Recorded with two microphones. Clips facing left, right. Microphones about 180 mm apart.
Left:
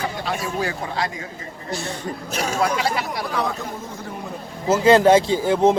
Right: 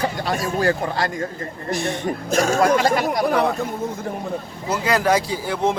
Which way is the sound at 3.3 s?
65° right (ahead or behind).